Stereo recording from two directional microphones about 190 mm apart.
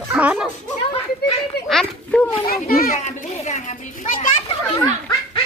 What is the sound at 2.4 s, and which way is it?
Children playing, 50° left (ahead or behind).